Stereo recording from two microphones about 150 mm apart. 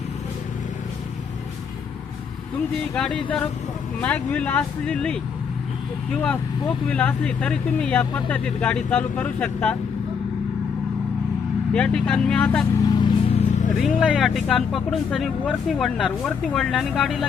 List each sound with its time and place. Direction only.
2.9 s speech: 5° left (ahead or behind)
6.8 s speech: 5° left (ahead or behind)
11.7 s speech: 5° left (ahead or behind)
12.8 s speech: 25° left (ahead or behind)
13.3 s vehicle: 55° left (ahead or behind)
13.7 s speech: centre (ahead or behind)